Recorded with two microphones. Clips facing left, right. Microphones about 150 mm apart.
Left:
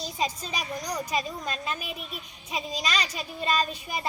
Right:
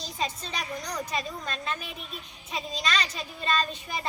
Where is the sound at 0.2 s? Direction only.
10° left (ahead or behind).